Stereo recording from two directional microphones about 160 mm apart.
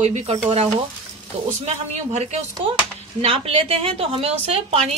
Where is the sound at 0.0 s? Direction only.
40° right (ahead or behind).